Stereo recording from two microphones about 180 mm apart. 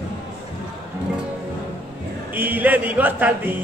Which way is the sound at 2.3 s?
10° right (ahead or behind).